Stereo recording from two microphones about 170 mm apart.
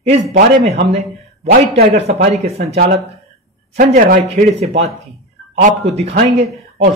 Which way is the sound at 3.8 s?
55° right (ahead or behind).